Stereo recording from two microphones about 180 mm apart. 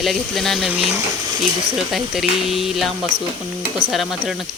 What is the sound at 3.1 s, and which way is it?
Stir, 90° right.